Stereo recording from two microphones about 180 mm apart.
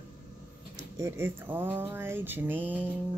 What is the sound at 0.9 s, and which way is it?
Speech, 15° right (ahead or behind).